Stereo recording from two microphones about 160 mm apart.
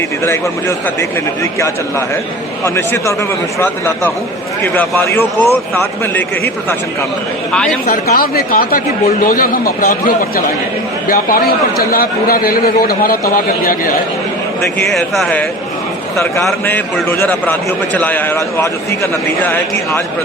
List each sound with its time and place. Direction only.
2.6 s a man's voice: 15° left (ahead or behind)
7.9 s a man's voice: 65° left (ahead or behind)
14.8 s speech: centre (ahead or behind)
16.6 s a man's voice: 10° left (ahead or behind)